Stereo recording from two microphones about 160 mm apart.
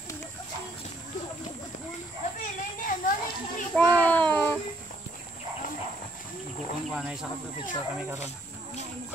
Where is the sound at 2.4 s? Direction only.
55° left (ahead or behind).